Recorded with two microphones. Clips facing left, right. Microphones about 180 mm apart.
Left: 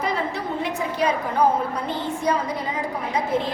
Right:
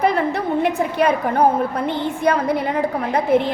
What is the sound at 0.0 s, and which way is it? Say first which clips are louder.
A woman's voice: right 7 dB; 60° right (ahead or behind).